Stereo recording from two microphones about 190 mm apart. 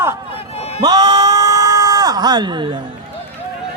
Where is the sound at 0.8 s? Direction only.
20° right (ahead or behind).